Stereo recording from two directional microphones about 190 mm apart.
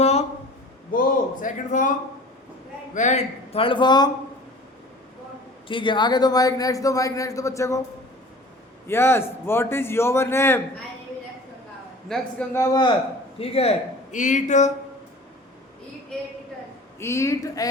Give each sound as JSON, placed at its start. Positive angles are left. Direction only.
{"t": 0.0, "sound": "a sound", "side_deg": 35}
{"t": 0.9, "sound": "a man's voice", "side_deg": 45}
{"t": 2.9, "sound": "speech", "side_deg": 40}
{"t": 5.6, "sound": "a man's voice", "side_deg": 25}
{"t": 8.9, "sound": "a man's voice", "side_deg": 15}
{"t": 12.0, "sound": "a man's voice", "side_deg": 5}
{"t": 12.5, "sound": "speech", "side_deg": 20}
{"t": 13.4, "sound": "speech", "side_deg": 30}
{"t": 17.0, "sound": "a man's voice", "side_deg": 15}